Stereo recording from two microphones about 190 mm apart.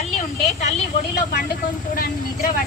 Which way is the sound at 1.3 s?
50° left (ahead or behind).